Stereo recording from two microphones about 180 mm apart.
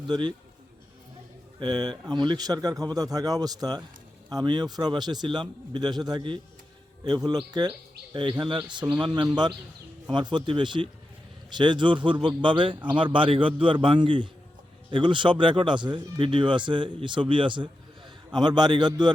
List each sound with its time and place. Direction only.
0.1 s speech: 25° right (ahead or behind)
1.5 s speech: 25° right (ahead or behind)
7.6 s speech: 25° right (ahead or behind)